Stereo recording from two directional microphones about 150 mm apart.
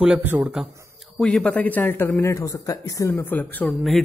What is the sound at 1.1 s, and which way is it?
A man's voice, 5° left (ahead or behind).